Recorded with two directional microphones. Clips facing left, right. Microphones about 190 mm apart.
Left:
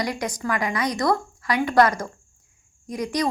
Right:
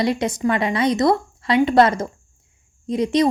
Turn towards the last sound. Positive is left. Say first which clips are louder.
# right 7 dB
turn(degrees=-25)  # may be behind; listen again after turning